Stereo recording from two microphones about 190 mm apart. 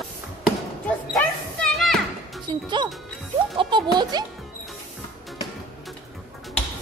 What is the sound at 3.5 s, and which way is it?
Music, 25° right (ahead or behind).